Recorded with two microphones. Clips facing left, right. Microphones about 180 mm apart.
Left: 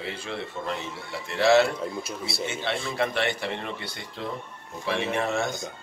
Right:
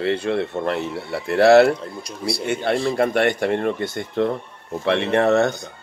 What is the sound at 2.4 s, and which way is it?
Speech, 60° right (ahead or behind).